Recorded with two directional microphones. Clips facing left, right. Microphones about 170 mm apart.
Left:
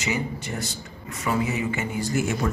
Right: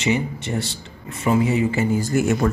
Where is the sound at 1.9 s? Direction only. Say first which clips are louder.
Right 5 dB; 50° right (ahead or behind).